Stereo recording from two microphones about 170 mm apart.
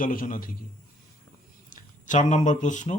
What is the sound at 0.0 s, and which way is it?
Speech, 55° left (ahead or behind).